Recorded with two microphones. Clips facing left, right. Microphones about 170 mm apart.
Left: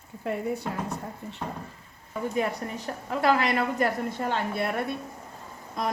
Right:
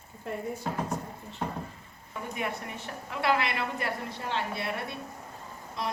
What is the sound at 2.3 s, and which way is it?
Speech, 40° left (ahead or behind).